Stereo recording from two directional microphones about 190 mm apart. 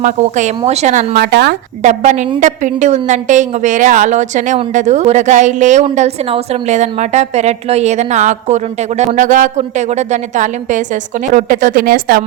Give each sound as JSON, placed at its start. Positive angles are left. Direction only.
{"t": 0.0, "sound": "a woman's voice", "side_deg": -40}
{"t": 1.1, "sound": "speech", "side_deg": -60}
{"t": 1.8, "sound": "a woman's voice", "side_deg": -40}